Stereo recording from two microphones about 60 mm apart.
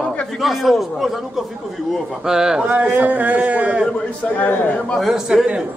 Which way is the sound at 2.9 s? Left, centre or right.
Right.